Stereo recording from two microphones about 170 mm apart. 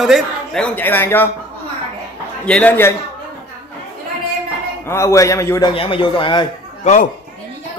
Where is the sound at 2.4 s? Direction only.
10° left (ahead or behind).